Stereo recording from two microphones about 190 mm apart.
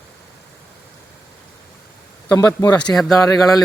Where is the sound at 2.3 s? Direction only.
20° left (ahead or behind).